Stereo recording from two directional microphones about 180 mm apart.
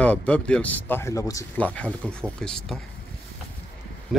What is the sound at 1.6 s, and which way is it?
Speech, 5° left (ahead or behind).